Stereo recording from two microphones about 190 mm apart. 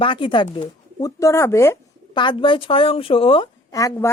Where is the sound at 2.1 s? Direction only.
25° left (ahead or behind).